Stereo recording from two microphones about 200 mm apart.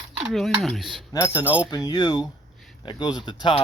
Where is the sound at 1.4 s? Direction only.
10° right (ahead or behind).